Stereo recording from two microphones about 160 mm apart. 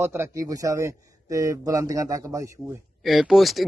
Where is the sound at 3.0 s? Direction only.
Centre (ahead or behind).